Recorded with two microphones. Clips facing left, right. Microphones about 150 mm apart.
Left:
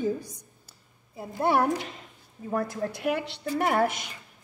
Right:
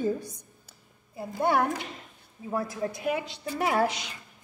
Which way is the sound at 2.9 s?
70° left (ahead or behind).